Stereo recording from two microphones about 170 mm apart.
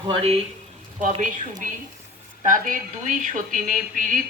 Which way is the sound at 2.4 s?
50° right (ahead or behind).